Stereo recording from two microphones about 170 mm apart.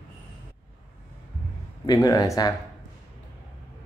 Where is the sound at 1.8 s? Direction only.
20° left (ahead or behind).